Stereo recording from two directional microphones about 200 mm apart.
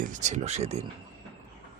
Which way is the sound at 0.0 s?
40° right (ahead or behind).